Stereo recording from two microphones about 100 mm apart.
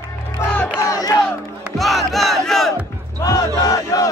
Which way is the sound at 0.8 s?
35° left (ahead or behind).